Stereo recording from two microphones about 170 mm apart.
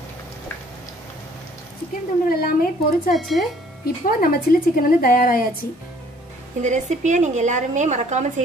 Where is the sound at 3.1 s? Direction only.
Centre (ahead or behind).